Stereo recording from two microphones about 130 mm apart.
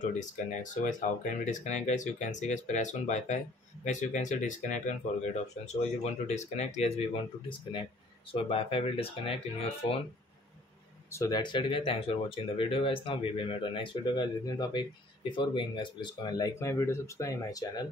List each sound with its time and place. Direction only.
0.2 s speech: 70° left (ahead or behind)
5.7 s speech: 60° left (ahead or behind)
8.3 s speech: 45° left (ahead or behind)
11.1 s speech: 25° left (ahead or behind)
16.5 s speech: 20° left (ahead or behind)